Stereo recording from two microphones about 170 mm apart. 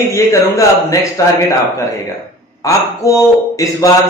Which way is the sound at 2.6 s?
20° left (ahead or behind).